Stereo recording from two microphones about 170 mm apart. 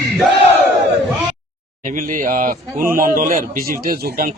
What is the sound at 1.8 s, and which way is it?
Speech, 50° right (ahead or behind).